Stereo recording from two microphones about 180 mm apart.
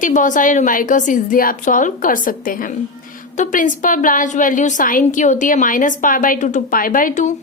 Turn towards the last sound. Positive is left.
turn(degrees=45)  # may be behind; listen again after turning